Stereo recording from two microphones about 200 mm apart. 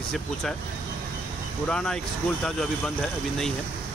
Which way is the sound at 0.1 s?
Centre (ahead or behind).